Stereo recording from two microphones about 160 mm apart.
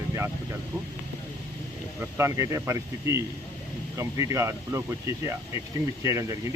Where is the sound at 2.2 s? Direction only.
15° right (ahead or behind).